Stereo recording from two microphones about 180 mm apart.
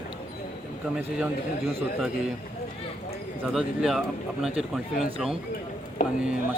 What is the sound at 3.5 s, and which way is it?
Speech, 5° right (ahead or behind).